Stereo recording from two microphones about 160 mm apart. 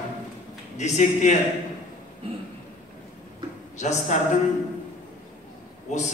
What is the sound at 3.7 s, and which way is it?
Speech, 45° left (ahead or behind).